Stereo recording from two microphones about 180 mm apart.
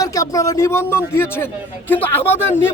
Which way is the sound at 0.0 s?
20° left (ahead or behind).